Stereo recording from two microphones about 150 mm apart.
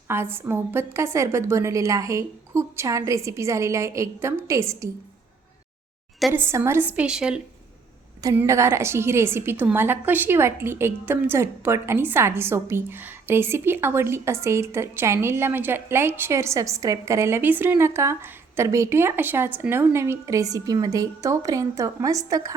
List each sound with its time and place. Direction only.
0.1 s a woman's voice: 15° right (ahead or behind)
6.3 s a woman's voice: 15° right (ahead or behind)
8.4 s a woman's voice: 20° right (ahead or behind)